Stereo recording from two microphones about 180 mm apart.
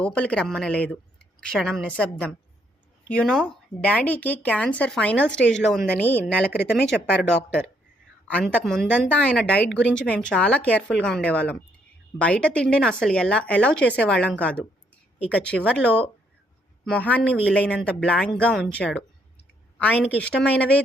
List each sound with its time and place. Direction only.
0.0 s speech: 5° left (ahead or behind)
6.9 s speech: 65° left (ahead or behind)
7.3 s speech: 5° left (ahead or behind)